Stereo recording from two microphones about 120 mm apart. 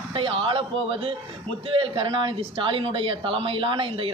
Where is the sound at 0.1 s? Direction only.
50° right (ahead or behind).